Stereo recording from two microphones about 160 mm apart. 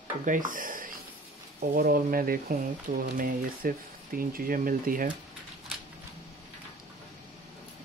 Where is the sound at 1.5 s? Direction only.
70° right (ahead or behind).